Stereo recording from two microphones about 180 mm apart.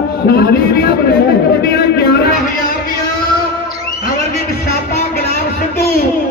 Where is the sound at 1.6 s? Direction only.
60° left (ahead or behind).